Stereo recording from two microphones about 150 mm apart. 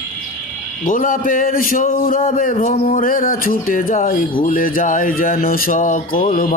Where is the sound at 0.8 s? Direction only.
60° left (ahead or behind).